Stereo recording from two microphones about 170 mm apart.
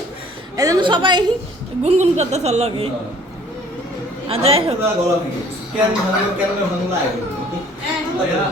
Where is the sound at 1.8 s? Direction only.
40° right (ahead or behind).